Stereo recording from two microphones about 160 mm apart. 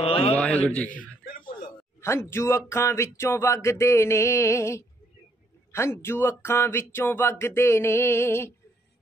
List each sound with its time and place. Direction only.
0.0 s a man's voice: 35° left (ahead or behind)
0.3 s a sound: 10° left (ahead or behind)
0.7 s speech: 10° left (ahead or behind)